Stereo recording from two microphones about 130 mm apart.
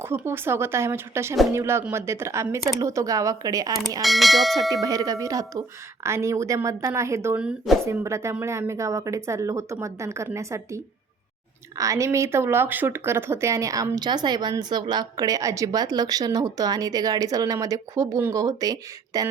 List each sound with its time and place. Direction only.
0.0 s speech: 20° right (ahead or behind)
4.0 s speech: centre (ahead or behind)
4.7 s speech: 30° right (ahead or behind)
7.4 s speech: centre (ahead or behind)
7.9 s speech: 20° right (ahead or behind)
11.8 s speech: 25° right (ahead or behind)